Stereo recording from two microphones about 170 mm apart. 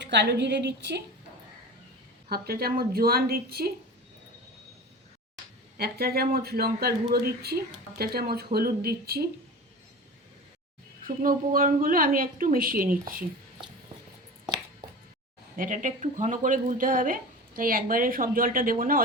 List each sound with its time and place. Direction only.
0.0 s a woman's voice: 90° right
2.3 s a woman's voice: 65° right (ahead or behind)
5.7 s a woman's voice: 65° right (ahead or behind)
11.0 s a woman's voice: 55° right (ahead or behind)
15.5 s speech: 50° right (ahead or behind)